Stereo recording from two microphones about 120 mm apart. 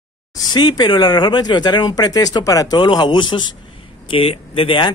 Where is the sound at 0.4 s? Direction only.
40° left (ahead or behind).